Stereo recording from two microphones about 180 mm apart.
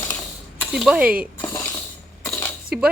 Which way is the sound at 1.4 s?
15° left (ahead or behind).